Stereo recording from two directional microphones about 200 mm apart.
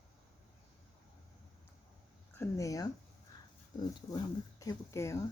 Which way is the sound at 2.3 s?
15° left (ahead or behind).